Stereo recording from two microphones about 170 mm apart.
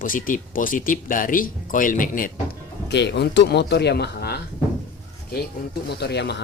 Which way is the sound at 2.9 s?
85° left.